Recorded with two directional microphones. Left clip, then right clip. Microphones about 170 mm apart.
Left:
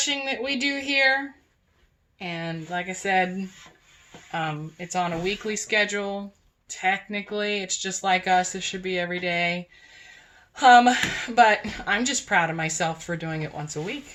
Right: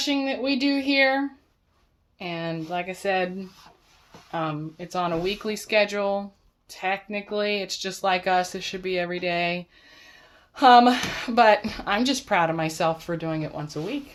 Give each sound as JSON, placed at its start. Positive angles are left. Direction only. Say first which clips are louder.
{"t": 0.0, "sound": "speech", "louder": "right 1 dB", "side_deg": -40}
{"t": 4.3, "sound": "speech", "louder": "even", "side_deg": -30}